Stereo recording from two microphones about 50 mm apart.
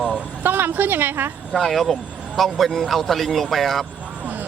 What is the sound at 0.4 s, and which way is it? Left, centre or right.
Speech, right.